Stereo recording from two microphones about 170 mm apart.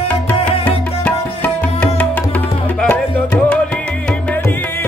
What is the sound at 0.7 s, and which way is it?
Music, 10° left (ahead or behind).